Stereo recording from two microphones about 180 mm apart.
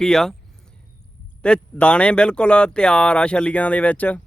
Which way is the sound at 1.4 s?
5° left (ahead or behind).